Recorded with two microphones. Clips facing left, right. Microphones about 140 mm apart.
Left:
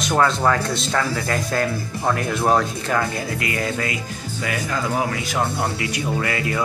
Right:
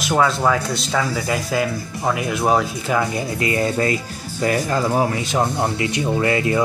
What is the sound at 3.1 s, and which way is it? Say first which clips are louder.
Speech: right 4 dB; 25° right (ahead or behind).